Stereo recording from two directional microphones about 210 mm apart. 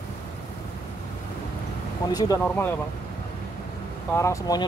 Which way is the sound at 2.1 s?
20° left (ahead or behind).